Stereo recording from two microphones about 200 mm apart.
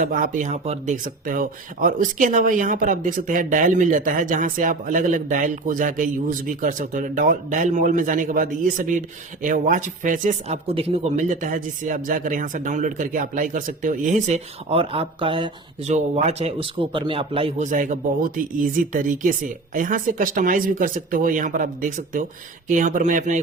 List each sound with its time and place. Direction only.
0.0 s speech: 40° right (ahead or behind)